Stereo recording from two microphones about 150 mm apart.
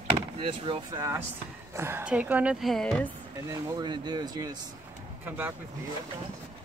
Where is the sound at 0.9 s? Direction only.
20° right (ahead or behind); by 3.1 s 5° left (ahead or behind).